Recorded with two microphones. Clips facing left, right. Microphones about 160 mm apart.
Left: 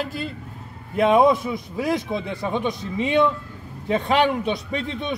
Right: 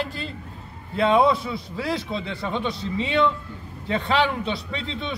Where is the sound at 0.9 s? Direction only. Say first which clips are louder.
Left 2 dB; 15° left (ahead or behind).